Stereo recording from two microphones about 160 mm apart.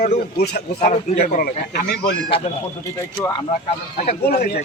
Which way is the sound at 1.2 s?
50° left (ahead or behind).